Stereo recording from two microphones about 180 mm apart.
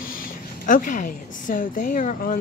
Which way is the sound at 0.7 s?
45° left (ahead or behind).